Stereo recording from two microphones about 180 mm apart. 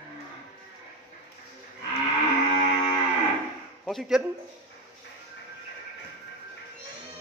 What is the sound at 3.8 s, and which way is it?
Speech, centre (ahead or behind).